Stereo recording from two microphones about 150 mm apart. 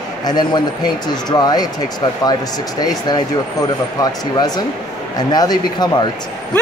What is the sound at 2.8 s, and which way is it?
A woman's voice, 25° left (ahead or behind).